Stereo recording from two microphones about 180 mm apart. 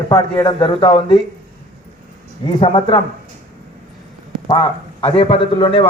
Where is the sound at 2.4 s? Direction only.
30° left (ahead or behind).